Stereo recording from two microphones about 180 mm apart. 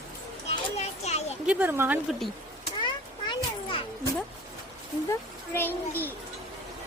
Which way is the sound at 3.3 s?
30° left (ahead or behind).